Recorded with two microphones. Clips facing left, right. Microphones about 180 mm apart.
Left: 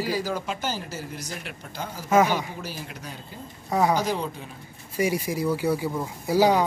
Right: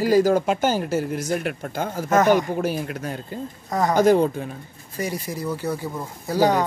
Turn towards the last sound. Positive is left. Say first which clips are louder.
# even
turn(degrees=10)  # may be behind; listen again after turning